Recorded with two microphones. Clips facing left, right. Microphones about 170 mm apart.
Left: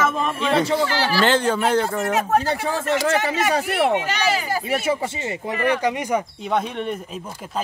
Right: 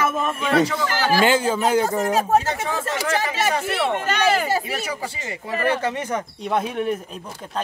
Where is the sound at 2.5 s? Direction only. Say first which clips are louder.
Left 3 dB; 30° left (ahead or behind).